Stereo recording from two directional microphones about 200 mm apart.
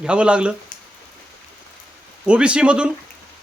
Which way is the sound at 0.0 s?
5° right (ahead or behind).